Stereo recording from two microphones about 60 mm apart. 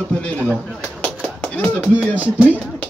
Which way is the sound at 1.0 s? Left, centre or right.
Left.